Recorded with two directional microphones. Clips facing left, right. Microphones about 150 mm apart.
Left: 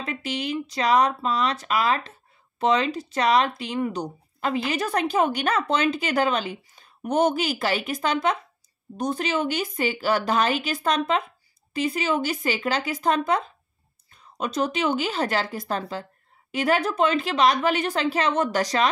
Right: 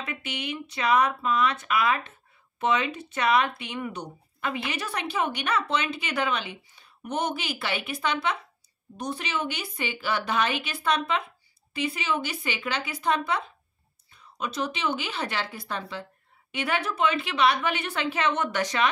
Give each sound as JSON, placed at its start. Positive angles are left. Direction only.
{"t": 0.0, "sound": "speech", "side_deg": 35}